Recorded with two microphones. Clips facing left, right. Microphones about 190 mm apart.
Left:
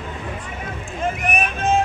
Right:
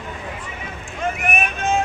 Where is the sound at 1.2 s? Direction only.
30° left (ahead or behind).